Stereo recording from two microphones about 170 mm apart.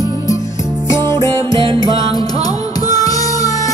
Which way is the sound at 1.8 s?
20° left (ahead or behind).